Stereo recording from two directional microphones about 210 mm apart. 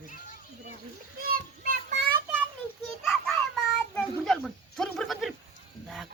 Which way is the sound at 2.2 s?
10° right (ahead or behind).